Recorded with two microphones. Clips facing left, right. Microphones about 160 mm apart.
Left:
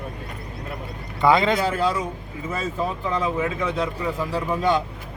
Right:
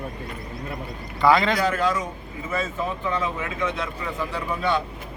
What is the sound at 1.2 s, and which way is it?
Speech, 20° left (ahead or behind).